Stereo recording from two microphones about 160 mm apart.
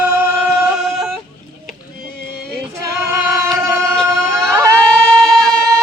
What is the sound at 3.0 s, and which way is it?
Singing, 15° right (ahead or behind).